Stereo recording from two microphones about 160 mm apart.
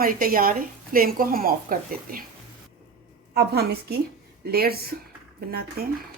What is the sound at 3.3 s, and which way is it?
Speech, 85° right.